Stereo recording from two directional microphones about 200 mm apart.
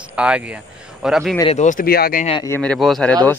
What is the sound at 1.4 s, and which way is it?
Speech, 30° left (ahead or behind).